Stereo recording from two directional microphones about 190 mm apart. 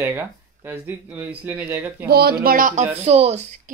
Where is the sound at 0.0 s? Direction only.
10° right (ahead or behind).